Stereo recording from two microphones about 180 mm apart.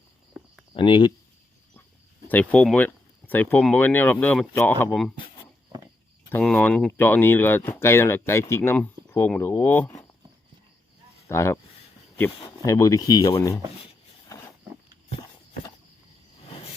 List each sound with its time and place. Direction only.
0.4 s a sound: centre (ahead or behind)
0.7 s speech: 30° left (ahead or behind)
2.2 s speech: 10° left (ahead or behind)
6.3 s speech: 5° left (ahead or behind)
11.3 s speech: 15° left (ahead or behind)